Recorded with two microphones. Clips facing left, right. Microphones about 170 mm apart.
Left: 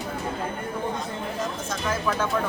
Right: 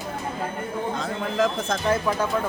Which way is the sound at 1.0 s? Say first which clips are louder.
Right 6 dB; 90° right.